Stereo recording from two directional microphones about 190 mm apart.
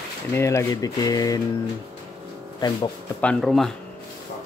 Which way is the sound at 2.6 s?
20° left (ahead or behind).